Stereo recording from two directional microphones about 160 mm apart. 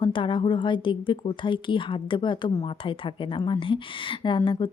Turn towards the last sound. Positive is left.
turn(degrees=30)  # may be behind; listen again after turning